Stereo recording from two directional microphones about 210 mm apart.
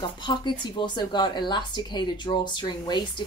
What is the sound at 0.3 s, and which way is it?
Speech, 20° left (ahead or behind).